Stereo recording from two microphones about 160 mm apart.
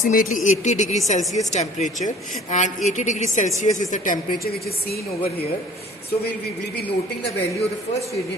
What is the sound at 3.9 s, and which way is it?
A woman's voice, 65° left (ahead or behind).